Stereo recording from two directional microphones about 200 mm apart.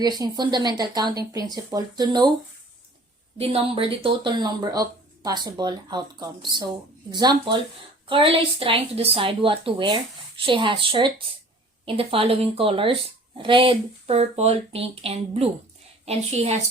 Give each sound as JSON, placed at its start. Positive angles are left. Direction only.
{"t": 0.0, "sound": "a woman's voice", "side_deg": -20}
{"t": 3.3, "sound": "a woman's voice", "side_deg": -30}